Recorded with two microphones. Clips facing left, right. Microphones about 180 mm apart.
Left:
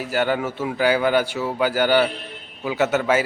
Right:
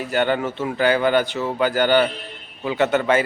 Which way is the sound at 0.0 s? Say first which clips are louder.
Right 1 dB; 5° left (ahead or behind).